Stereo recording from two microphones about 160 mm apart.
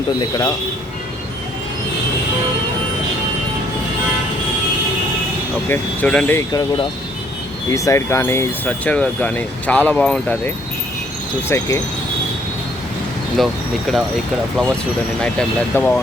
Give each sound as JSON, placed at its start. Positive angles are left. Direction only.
{"t": 0.2, "sound": "speech", "side_deg": 20}
{"t": 5.6, "sound": "speech", "side_deg": 10}
{"t": 6.5, "sound": "speech", "side_deg": 25}
{"t": 13.4, "sound": "speech", "side_deg": 0}
{"t": 15.2, "sound": "speech", "side_deg": 5}